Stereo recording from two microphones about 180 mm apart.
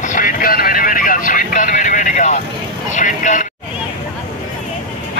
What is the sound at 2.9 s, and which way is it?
Speech, 45° left (ahead or behind).